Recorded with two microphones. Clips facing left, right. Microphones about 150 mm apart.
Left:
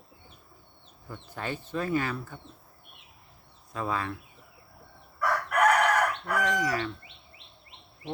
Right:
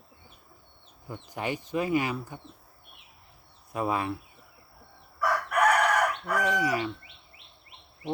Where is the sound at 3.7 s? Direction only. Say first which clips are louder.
Right 3 dB; 20° right (ahead or behind).